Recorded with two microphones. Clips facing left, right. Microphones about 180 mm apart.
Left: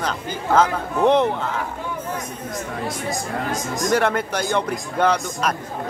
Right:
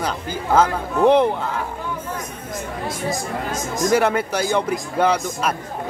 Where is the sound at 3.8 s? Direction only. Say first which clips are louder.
Right 3 dB; 5° right (ahead or behind).